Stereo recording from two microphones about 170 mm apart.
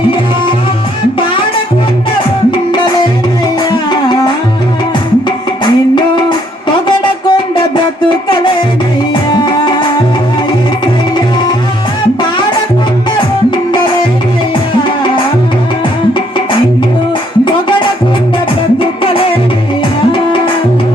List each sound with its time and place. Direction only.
3.7 s music: 25° left (ahead or behind)
5.6 s music: 25° left (ahead or behind)
6.8 s a sound: 30° left (ahead or behind)
9.3 s music: 25° left (ahead or behind)
17.4 s music: 30° left (ahead or behind)